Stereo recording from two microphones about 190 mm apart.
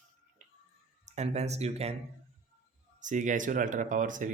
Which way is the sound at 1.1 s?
35° right (ahead or behind).